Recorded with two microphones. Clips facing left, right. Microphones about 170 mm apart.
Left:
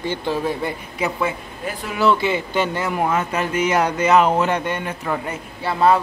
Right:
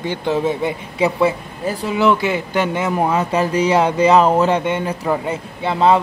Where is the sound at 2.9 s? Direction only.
35° right (ahead or behind).